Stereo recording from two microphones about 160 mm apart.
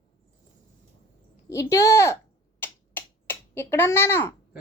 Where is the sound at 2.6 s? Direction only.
15° left (ahead or behind).